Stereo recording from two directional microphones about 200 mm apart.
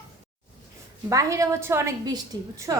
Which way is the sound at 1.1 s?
15° right (ahead or behind).